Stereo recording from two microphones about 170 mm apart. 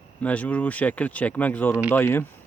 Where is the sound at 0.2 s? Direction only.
10° left (ahead or behind).